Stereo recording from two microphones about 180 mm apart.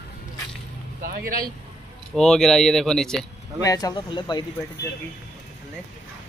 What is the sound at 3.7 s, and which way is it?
Speech, 20° left (ahead or behind).